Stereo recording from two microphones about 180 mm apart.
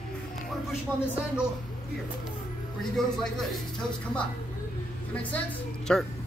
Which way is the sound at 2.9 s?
Centre (ahead or behind).